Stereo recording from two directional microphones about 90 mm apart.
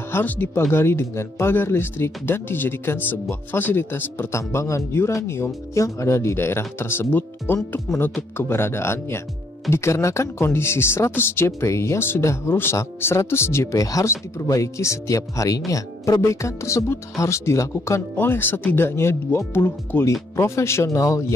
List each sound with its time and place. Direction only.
0.1 s speech: 20° left (ahead or behind); by 21.2 s 35° left (ahead or behind)